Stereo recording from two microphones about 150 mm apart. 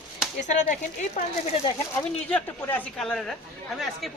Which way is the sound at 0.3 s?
55° left (ahead or behind).